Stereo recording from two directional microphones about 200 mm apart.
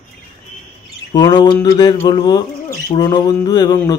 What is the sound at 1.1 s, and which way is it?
Speech, 20° left (ahead or behind).